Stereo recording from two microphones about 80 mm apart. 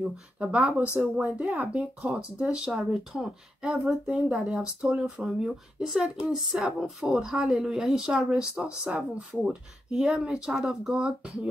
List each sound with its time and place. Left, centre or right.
0.4 s speech: centre